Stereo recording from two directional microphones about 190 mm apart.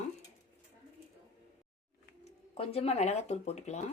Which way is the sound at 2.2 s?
35° left (ahead or behind).